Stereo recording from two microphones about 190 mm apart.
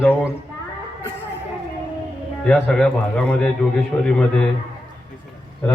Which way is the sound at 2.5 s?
5° left (ahead or behind).